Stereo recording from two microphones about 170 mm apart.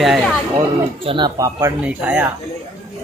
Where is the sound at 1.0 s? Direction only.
30° right (ahead or behind).